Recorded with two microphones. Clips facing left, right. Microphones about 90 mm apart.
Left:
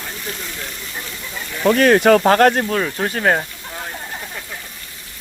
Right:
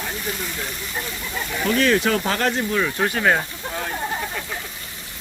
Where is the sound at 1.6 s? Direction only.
60° left (ahead or behind).